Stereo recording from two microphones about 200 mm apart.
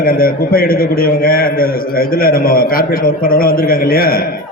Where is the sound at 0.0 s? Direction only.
45° left (ahead or behind).